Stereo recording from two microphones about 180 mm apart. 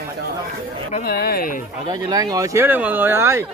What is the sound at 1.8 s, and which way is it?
Speech, 20° right (ahead or behind).